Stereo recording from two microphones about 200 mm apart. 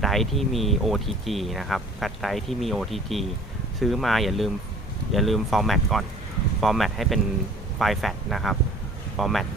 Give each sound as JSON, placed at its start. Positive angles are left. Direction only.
{"t": 0.0, "sound": "speech", "side_deg": 0}